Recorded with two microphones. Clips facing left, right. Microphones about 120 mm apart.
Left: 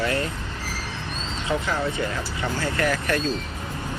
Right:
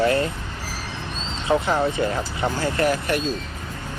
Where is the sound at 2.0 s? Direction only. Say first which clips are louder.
Right 4 dB; 30° right (ahead or behind).